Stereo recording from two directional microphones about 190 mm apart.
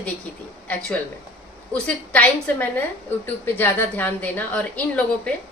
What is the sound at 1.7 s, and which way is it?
A woman's voice, 5° left (ahead or behind).